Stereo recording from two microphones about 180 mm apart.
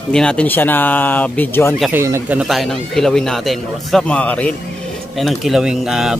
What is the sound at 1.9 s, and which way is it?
A man's voice, 15° right (ahead or behind).